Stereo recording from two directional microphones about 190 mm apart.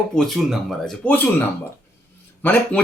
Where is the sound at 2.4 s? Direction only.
10° left (ahead or behind).